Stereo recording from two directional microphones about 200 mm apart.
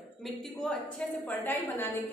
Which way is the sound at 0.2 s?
5° left (ahead or behind).